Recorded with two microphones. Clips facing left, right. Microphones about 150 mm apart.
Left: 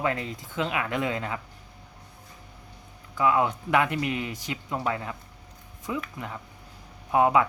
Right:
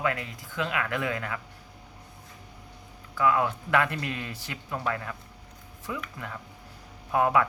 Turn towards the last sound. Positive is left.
turn(degrees=20)  # may be behind; listen again after turning